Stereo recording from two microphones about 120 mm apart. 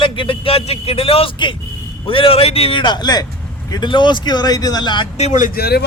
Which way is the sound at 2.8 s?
35° left (ahead or behind).